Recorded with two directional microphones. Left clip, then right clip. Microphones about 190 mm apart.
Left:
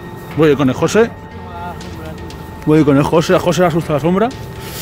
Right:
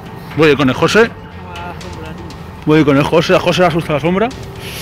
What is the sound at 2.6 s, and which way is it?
Speech, 20° left (ahead or behind).